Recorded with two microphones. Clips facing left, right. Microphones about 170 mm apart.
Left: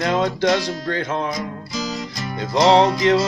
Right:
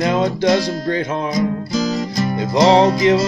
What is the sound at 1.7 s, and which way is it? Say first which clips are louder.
Music: right 8 dB; 40° right (ahead or behind).